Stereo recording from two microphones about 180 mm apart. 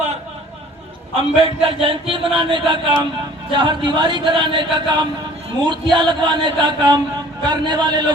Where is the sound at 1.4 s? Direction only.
30° right (ahead or behind).